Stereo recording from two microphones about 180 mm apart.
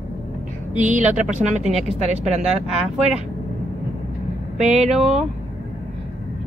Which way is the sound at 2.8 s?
Centre (ahead or behind).